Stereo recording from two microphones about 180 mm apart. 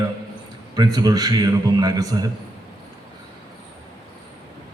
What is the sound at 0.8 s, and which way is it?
A man's voice, 20° right (ahead or behind).